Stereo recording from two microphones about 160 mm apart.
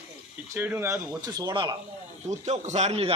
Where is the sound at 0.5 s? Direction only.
15° right (ahead or behind); by 1.7 s 30° right (ahead or behind).